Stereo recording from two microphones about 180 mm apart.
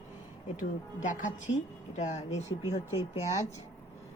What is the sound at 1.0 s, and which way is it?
Speech, 45° left (ahead or behind).